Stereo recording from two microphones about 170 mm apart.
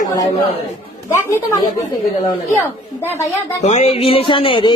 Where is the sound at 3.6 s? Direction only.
40° left (ahead or behind).